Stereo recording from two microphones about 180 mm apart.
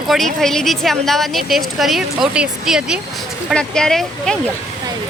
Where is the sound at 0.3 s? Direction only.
Centre (ahead or behind).